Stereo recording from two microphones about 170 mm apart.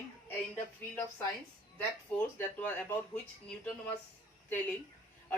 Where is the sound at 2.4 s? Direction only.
10° left (ahead or behind).